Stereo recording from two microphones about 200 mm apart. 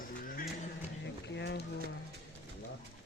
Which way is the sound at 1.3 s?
60° left (ahead or behind).